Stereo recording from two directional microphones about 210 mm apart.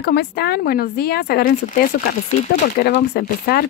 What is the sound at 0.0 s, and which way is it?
Speech, 50° left (ahead or behind).